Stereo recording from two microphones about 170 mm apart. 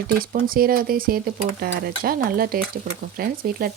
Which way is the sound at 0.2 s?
55° right (ahead or behind).